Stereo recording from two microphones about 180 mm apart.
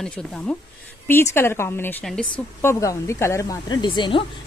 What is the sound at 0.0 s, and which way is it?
A woman's voice, 5° left (ahead or behind).